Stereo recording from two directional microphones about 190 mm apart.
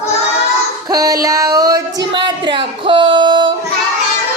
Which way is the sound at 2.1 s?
25° right (ahead or behind).